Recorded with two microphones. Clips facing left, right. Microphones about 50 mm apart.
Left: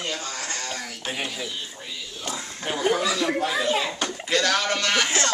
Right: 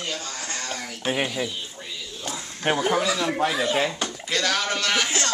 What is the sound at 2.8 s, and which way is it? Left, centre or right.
Speech, centre.